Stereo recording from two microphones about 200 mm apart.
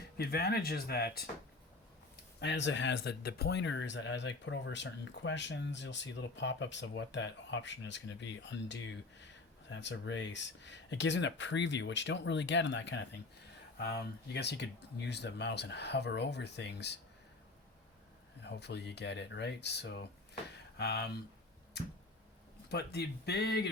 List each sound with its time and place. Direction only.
0.2 s speech: 50° left (ahead or behind)
2.4 s speech: 60° left (ahead or behind)
18.4 s speech: 55° left (ahead or behind)
22.7 s speech: 55° left (ahead or behind)